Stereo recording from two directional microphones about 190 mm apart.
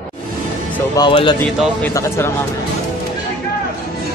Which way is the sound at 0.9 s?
25° left (ahead or behind).